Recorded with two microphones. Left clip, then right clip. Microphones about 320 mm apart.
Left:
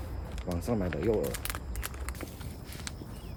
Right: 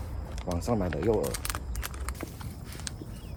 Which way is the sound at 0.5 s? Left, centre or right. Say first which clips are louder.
Right 3 dB; centre.